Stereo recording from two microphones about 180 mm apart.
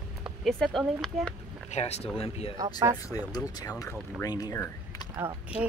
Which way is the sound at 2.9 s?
20° left (ahead or behind).